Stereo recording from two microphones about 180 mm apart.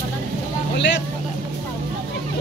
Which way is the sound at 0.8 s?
80° left.